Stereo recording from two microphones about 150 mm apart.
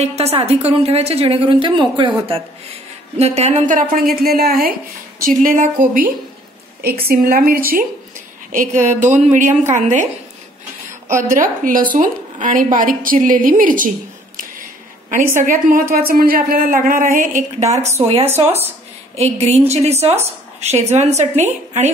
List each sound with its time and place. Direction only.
0.0 s a woman's voice: 45° right (ahead or behind)
3.2 s a woman's voice: 45° right (ahead or behind)
3.9 s a woman's voice: 80° right
5.2 s a woman's voice: 70° right (ahead or behind)
7.0 s a woman's voice: 90° right; by 7.8 s 75° right (ahead or behind)
8.5 s a woman's voice: 60° right (ahead or behind)
11.1 s a woman's voice: 60° right (ahead or behind)
18.0 s a woman's voice: 40° right (ahead or behind)